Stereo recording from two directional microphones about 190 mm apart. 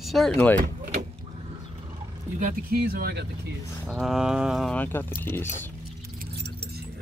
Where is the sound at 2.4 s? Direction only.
55° right (ahead or behind).